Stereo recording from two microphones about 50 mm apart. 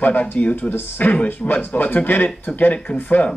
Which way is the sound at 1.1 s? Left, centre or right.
Left.